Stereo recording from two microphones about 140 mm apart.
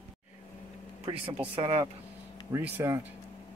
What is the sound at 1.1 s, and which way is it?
Speech, 40° right (ahead or behind).